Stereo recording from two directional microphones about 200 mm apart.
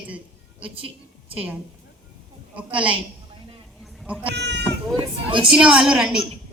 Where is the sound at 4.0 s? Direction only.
5° right (ahead or behind).